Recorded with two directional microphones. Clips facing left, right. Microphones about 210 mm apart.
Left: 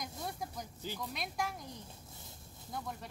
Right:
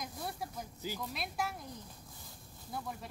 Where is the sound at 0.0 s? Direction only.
5° right (ahead or behind).